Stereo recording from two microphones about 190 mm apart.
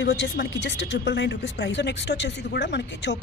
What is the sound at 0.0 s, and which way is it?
Speech, 70° left (ahead or behind).